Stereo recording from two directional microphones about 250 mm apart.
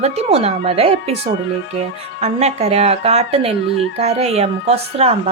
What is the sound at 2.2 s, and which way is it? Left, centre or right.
A woman's voice, right.